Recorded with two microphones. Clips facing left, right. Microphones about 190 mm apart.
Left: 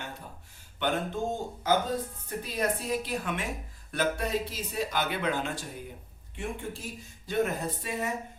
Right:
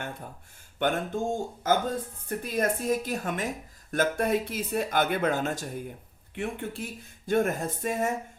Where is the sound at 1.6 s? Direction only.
50° right (ahead or behind).